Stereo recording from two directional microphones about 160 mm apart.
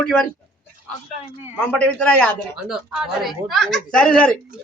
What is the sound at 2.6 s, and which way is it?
A woman's voice, centre (ahead or behind).